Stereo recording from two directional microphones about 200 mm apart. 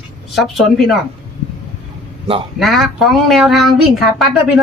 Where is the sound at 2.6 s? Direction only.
Centre (ahead or behind).